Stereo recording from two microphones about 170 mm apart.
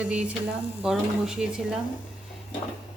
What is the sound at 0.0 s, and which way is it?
Speech, 5° right (ahead or behind).